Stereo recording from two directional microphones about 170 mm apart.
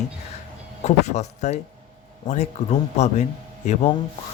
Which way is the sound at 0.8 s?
40° left (ahead or behind).